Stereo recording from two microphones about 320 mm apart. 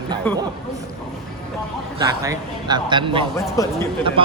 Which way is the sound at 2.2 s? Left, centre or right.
Centre.